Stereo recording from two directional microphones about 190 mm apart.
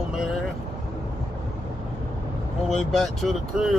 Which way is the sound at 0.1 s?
Centre (ahead or behind).